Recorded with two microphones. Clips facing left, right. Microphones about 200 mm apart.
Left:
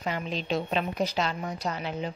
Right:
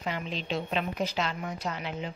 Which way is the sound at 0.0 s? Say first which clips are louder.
Left 2 dB; 40° left (ahead or behind).